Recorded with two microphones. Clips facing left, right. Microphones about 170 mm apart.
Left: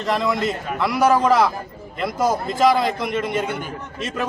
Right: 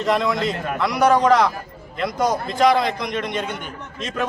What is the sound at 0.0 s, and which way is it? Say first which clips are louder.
A man's voice: right 1 dB; centre (ahead or behind).